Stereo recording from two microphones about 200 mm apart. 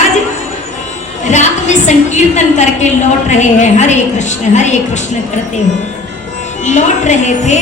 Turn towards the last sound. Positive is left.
turn(degrees=35)  # may be behind; listen again after turning